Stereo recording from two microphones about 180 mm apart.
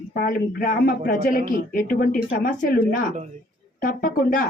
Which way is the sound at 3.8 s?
50° left (ahead or behind).